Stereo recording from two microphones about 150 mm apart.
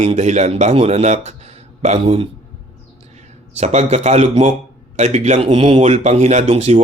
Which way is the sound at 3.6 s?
45° right (ahead or behind).